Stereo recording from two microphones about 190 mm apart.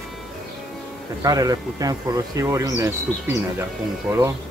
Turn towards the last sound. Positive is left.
turn(degrees=-15)  # may be behind; listen again after turning